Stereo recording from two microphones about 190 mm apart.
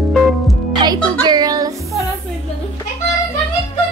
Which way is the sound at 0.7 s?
20° right (ahead or behind).